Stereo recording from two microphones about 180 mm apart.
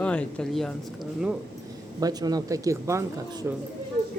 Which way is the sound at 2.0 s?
20° right (ahead or behind).